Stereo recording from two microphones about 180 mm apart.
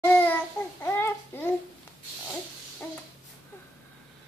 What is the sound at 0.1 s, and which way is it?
Babbling, 10° left (ahead or behind).